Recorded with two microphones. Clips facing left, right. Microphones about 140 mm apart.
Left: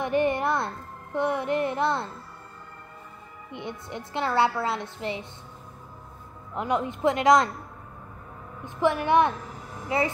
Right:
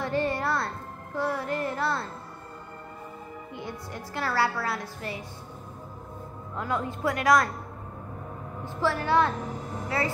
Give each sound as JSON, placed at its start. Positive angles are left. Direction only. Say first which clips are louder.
{"t": 0.0, "sound": "a woman's voice", "louder": "left 3 dB", "side_deg": 20}
{"t": 3.5, "sound": "a woman's voice", "louder": "left 3 dB", "side_deg": 20}
{"t": 6.5, "sound": "a woman's voice", "louder": "left 4 dB", "side_deg": 20}
{"t": 8.6, "sound": "a woman's voice", "louder": "left 3 dB", "side_deg": 20}